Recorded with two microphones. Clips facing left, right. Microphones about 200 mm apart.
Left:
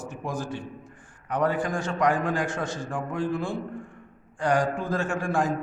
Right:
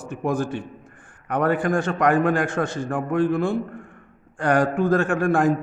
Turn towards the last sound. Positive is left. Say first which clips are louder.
# right 6 dB
turn(degrees=-55)  # may be behind; listen again after turning